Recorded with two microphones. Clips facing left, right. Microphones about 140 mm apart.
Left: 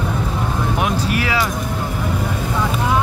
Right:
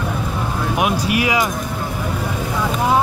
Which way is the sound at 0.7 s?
10° right (ahead or behind).